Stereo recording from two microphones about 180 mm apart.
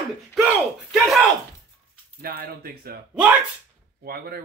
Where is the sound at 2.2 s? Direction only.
55° right (ahead or behind).